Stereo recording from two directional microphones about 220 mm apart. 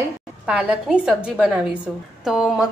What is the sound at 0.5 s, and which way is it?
A woman's voice, 5° right (ahead or behind).